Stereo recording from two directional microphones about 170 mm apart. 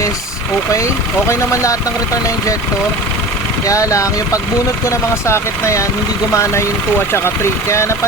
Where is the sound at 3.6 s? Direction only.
20° left (ahead or behind).